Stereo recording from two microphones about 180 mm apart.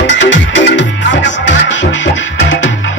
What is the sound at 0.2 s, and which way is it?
Music, 90° left.